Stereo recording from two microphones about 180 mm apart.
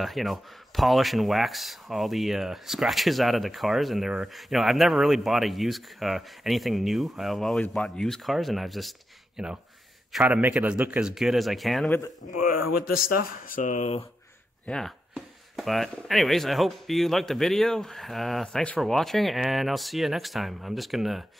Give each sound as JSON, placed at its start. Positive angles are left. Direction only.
{"t": 0.0, "sound": "speech", "side_deg": 0}
{"t": 12.3, "sound": "speech", "side_deg": 50}
{"t": 14.7, "sound": "speech", "side_deg": 0}